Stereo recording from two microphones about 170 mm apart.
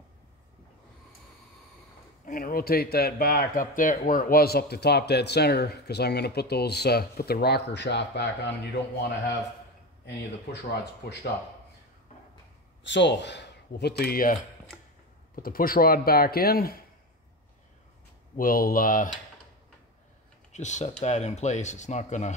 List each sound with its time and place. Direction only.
2.2 s speech: 55° left (ahead or behind); by 8.5 s 85° left
10.0 s speech: 85° left
12.8 s speech: 90° left; by 14.3 s 55° left (ahead or behind)
15.3 s speech: 60° left (ahead or behind)
18.3 s speech: 55° left (ahead or behind)
20.5 s speech: 45° left (ahead or behind)